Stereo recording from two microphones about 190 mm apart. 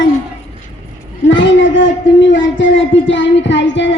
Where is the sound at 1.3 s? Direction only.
75° left (ahead or behind).